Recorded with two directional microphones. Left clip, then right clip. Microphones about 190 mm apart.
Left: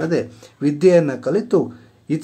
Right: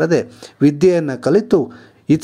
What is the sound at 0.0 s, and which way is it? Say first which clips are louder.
Speech: right 5 dB; 35° right (ahead or behind).